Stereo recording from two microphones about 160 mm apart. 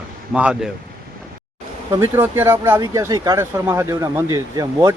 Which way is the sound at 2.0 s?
15° right (ahead or behind).